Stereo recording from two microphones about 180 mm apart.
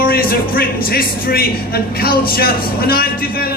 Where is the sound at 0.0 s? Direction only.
55° left (ahead or behind).